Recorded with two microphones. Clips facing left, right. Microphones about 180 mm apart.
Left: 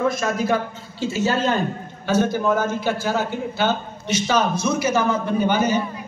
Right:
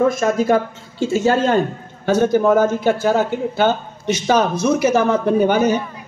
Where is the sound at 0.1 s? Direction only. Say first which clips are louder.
Right 5 dB; 50° right (ahead or behind).